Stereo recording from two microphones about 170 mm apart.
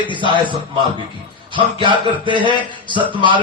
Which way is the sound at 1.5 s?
30° right (ahead or behind).